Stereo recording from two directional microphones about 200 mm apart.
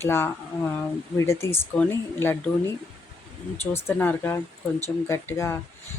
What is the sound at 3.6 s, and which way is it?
A woman's voice, 10° left (ahead or behind).